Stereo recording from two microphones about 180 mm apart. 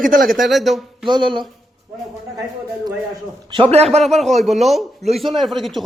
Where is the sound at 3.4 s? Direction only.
30° right (ahead or behind).